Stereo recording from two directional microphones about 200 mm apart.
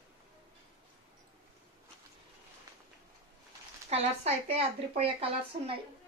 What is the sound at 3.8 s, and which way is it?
Speech, 30° right (ahead or behind).